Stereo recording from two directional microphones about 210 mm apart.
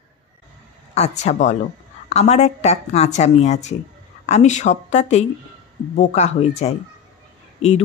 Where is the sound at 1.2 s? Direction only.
35° left (ahead or behind).